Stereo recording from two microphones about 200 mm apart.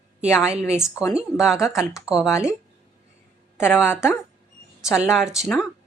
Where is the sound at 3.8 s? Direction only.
10° left (ahead or behind).